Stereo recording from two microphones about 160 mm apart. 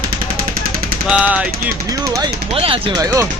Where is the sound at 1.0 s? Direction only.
5° right (ahead or behind).